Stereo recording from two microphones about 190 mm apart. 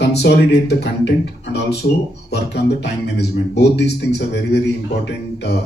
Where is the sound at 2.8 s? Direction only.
60° left (ahead or behind).